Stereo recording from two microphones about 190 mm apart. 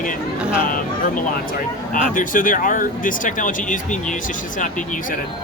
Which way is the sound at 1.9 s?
45° left (ahead or behind).